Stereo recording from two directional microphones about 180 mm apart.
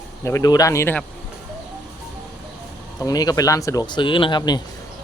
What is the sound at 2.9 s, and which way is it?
Speech, 20° left (ahead or behind).